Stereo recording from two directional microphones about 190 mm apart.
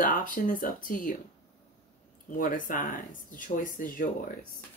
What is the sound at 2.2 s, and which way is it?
Speech, 45° left (ahead or behind).